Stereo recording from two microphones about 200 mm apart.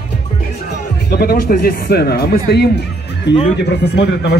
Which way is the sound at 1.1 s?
50° left (ahead or behind).